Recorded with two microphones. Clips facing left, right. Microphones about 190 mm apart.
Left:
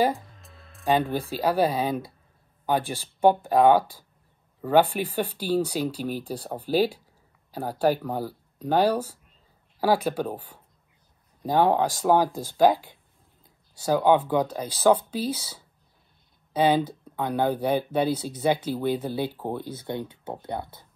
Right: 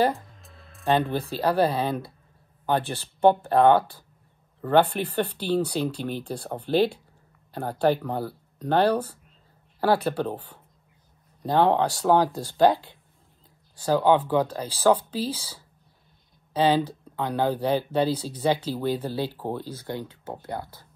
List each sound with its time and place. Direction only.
0.4 s music: centre (ahead or behind)
0.8 s speech: 10° left (ahead or behind)
16.5 s speech: 10° left (ahead or behind)
19.9 s speech: 25° left (ahead or behind)